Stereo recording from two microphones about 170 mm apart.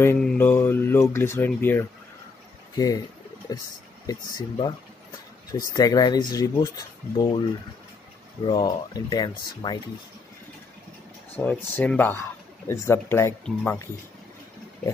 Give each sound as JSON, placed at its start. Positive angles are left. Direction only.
{"t": 0.0, "sound": "speech", "side_deg": 10}
{"t": 8.5, "sound": "speech", "side_deg": 25}
{"t": 11.3, "sound": "speech", "side_deg": 10}